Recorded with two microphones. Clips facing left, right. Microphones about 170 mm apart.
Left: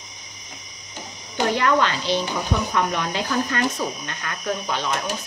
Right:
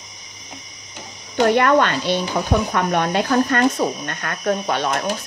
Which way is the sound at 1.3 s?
60° right (ahead or behind).